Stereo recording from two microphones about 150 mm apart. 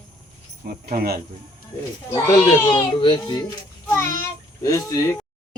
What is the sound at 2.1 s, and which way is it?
Speech, 15° left (ahead or behind).